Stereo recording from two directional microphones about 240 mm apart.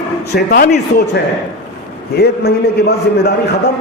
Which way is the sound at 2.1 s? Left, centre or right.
Left.